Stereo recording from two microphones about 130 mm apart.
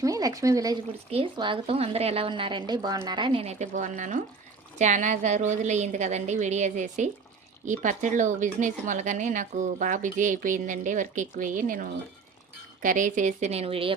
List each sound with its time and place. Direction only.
0.0 s speech: 25° right (ahead or behind)
1.1 s a woman's voice: 40° right (ahead or behind)
3.5 s a woman's voice: 65° right (ahead or behind); by 13.9 s 45° right (ahead or behind)